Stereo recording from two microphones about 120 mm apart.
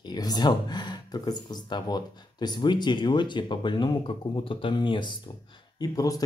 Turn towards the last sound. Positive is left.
turn(degrees=30)  # may be behind; listen again after turning